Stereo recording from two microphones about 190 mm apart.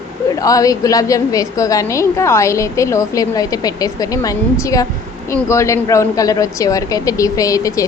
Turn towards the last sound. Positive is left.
turn(degrees=15)  # may be behind; listen again after turning